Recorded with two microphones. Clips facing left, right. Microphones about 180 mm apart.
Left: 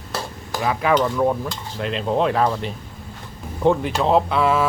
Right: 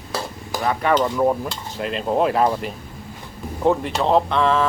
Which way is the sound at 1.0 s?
10° right (ahead or behind).